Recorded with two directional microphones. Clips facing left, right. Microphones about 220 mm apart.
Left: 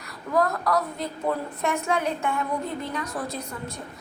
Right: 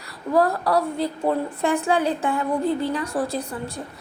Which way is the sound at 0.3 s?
30° right (ahead or behind).